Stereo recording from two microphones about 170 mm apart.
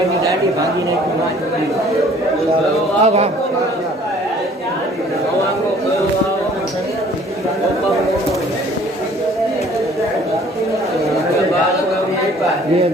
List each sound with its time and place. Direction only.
3.0 s a man's voice: 40° right (ahead or behind)